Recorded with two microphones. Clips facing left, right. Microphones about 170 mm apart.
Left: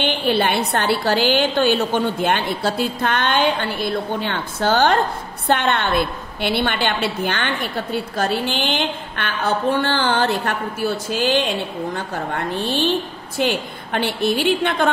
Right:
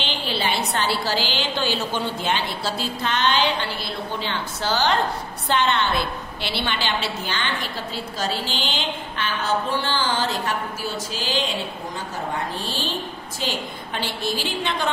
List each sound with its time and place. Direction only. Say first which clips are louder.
0.0 s a woman's voice: left 7 dB; 55° left (ahead or behind)